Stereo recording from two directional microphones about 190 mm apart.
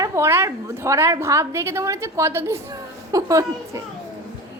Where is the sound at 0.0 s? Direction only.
15° right (ahead or behind).